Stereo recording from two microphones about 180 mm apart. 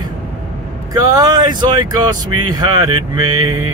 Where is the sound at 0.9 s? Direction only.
20° right (ahead or behind).